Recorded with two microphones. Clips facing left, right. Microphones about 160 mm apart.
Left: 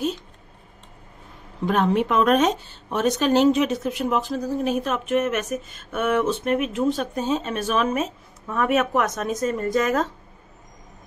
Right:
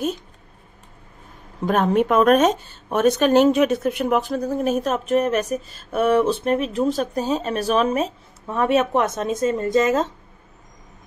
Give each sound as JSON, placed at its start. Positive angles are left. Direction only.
{"t": 1.7, "sound": "speech", "side_deg": -50}